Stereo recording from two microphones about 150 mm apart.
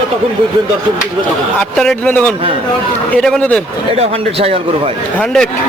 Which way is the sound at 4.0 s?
40° right (ahead or behind).